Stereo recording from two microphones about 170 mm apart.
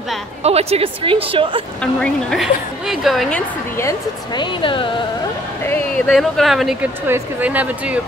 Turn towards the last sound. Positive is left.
turn(degrees=-10)  # may be behind; listen again after turning